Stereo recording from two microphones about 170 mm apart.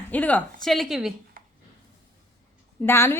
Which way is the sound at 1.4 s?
60° right (ahead or behind).